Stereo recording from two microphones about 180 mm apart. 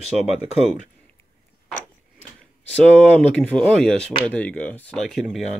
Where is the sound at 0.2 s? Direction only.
35° left (ahead or behind).